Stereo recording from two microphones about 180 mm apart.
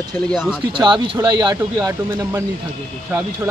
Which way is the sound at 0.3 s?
5° right (ahead or behind).